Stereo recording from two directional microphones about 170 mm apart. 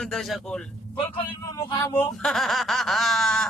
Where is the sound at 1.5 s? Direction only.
20° left (ahead or behind).